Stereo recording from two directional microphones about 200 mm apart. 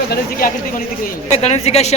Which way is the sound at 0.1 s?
45° left (ahead or behind).